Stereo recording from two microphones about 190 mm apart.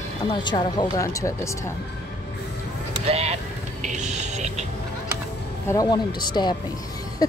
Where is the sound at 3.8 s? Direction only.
40° right (ahead or behind).